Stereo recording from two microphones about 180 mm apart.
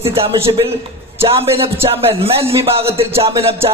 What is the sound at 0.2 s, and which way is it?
A man's voice, 30° right (ahead or behind).